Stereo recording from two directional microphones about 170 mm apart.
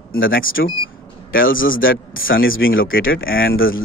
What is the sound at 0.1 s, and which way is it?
Speech, 60° left (ahead or behind).